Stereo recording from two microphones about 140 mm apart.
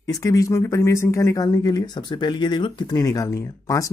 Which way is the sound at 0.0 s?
25° left (ahead or behind).